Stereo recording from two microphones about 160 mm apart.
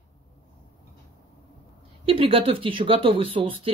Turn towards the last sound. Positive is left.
turn(degrees=-35)  # may be behind; listen again after turning